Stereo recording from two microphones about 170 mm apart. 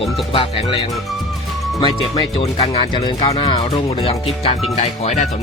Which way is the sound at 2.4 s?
35° left (ahead or behind).